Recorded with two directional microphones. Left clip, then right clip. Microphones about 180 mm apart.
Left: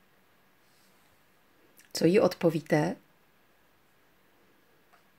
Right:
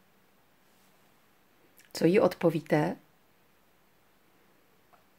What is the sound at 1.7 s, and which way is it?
Speech, 25° left (ahead or behind).